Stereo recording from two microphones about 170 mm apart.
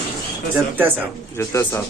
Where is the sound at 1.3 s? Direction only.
15° left (ahead or behind).